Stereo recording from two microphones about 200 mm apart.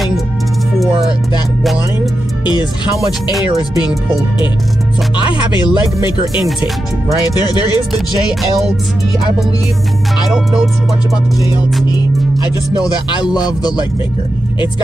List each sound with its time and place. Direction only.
5.1 s speech: 25° left (ahead or behind)
12.8 s speech: 20° left (ahead or behind)